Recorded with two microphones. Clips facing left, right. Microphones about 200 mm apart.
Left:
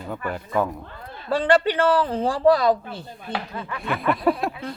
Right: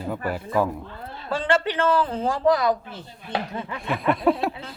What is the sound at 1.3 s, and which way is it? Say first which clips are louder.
A man's voice: left 4 dB; 35° left (ahead or behind).